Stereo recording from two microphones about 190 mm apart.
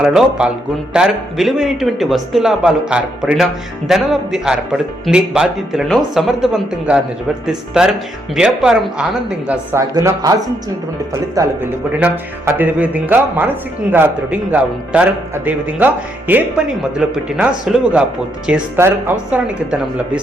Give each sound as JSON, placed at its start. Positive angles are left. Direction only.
{"t": 0.0, "sound": "a man's voice", "side_deg": -5}
{"t": 9.9, "sound": "a man's voice", "side_deg": -20}